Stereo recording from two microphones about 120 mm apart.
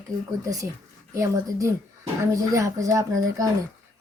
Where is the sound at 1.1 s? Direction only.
25° right (ahead or behind).